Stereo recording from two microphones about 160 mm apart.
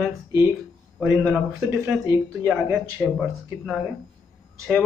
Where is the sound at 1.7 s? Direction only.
15° right (ahead or behind).